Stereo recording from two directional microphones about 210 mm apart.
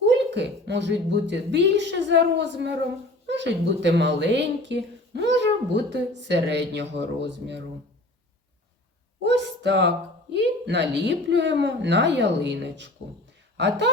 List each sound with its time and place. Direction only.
0.0 s a woman's voice: 55° right (ahead or behind)
9.2 s a sound: 55° right (ahead or behind)
10.3 s a woman's voice: 55° right (ahead or behind)